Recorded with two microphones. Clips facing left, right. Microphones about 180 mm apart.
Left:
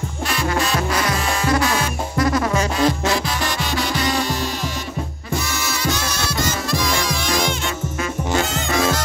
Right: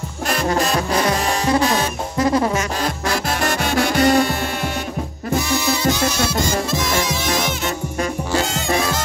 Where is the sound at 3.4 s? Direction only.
50° right (ahead or behind).